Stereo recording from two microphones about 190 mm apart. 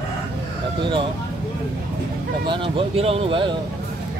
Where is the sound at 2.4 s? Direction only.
25° right (ahead or behind).